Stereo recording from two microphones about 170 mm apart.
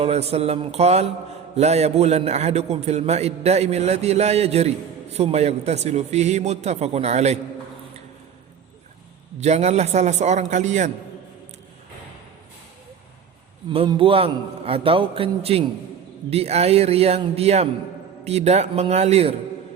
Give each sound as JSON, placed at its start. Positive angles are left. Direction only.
{"t": 0.0, "sound": "a man's voice", "side_deg": -40}
{"t": 9.4, "sound": "a man's voice", "side_deg": -40}
{"t": 13.7, "sound": "a man's voice", "side_deg": -30}